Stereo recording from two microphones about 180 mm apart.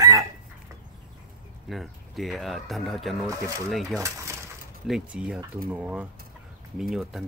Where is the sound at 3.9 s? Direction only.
15° right (ahead or behind).